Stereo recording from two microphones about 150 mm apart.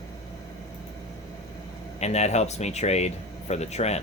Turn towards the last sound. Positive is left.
turn(degrees=45)  # may be behind; listen again after turning